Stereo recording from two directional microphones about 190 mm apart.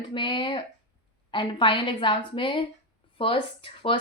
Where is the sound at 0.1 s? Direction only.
25° left (ahead or behind).